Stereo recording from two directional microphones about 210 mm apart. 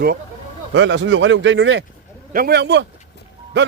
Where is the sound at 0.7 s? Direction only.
60° right (ahead or behind).